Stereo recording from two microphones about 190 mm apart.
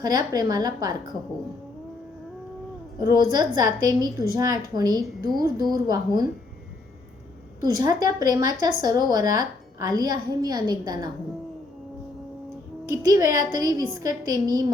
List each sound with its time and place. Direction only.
0.0 s speech: 20° right (ahead or behind)
3.1 s speech: 20° right (ahead or behind)
7.8 s speech: 20° right (ahead or behind)
12.9 s speech: 20° right (ahead or behind)